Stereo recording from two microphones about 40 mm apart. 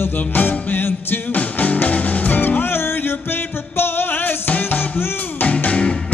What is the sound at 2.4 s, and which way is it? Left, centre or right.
Music, left.